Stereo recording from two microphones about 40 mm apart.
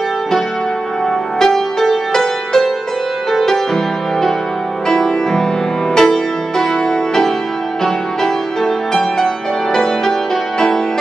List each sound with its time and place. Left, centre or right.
1.4 s music: centre
7.8 s music: centre